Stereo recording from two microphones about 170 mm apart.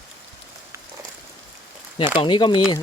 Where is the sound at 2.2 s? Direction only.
25° left (ahead or behind).